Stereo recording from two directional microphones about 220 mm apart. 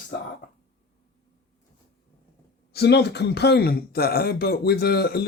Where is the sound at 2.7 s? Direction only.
50° left (ahead or behind).